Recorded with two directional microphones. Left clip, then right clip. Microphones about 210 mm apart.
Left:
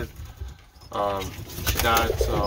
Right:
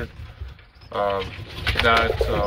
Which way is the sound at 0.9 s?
15° left (ahead or behind).